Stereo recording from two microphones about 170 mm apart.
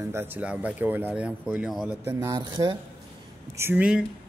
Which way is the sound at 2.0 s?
15° right (ahead or behind).